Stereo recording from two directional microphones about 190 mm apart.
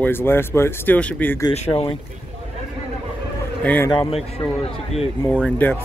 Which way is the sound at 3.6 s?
10° left (ahead or behind).